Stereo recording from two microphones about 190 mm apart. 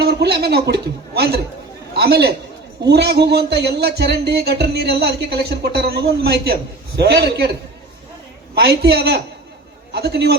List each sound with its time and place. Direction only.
0.0 s speech: 60° right (ahead or behind)
8.5 s speech: 60° right (ahead or behind)